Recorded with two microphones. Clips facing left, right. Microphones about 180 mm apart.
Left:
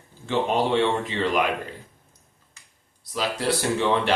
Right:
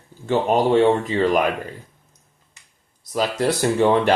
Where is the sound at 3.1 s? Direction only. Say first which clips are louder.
Right 4 dB; 45° right (ahead or behind).